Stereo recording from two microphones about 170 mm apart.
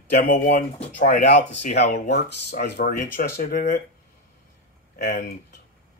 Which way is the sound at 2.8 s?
50° left (ahead or behind).